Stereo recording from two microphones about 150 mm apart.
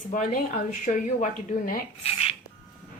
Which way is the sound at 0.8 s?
55° left (ahead or behind).